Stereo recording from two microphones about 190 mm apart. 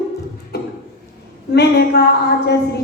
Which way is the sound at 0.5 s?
60° left (ahead or behind).